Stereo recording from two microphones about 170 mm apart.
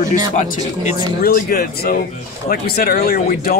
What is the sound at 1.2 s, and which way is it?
Speech, 60° left (ahead or behind).